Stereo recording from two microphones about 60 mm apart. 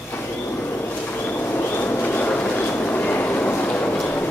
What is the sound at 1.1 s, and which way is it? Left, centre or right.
Vehicle, left.